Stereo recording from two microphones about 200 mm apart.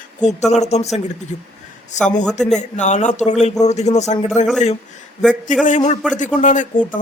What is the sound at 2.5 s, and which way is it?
Speech, 35° left (ahead or behind).